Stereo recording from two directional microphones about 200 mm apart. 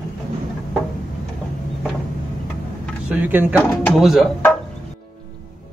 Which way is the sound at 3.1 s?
10° right (ahead or behind).